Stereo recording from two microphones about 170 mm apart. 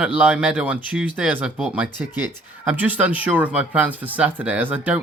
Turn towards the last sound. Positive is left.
turn(degrees=-10)  # may be behind; listen again after turning